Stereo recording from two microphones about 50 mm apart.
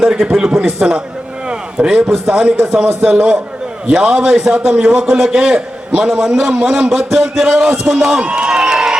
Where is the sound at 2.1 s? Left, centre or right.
Centre.